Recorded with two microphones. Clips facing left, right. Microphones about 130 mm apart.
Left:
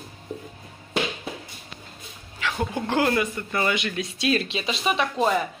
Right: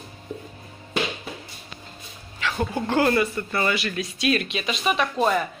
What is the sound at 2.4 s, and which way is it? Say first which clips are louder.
Speech: right 1 dB; 15° left (ahead or behind).